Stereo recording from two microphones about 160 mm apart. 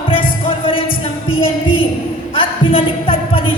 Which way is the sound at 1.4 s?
35° left (ahead or behind).